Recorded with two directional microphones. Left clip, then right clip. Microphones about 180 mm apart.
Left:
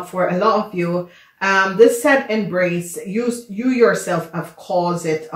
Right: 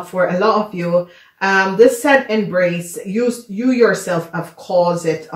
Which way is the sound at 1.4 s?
30° right (ahead or behind).